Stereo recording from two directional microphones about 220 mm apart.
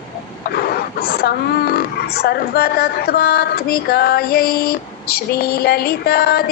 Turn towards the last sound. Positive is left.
turn(degrees=45)  # may be behind; listen again after turning